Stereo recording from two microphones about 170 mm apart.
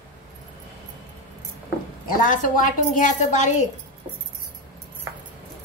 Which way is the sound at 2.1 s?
50° left (ahead or behind).